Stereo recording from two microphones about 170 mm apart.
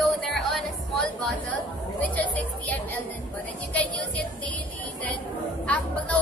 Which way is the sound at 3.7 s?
10° left (ahead or behind).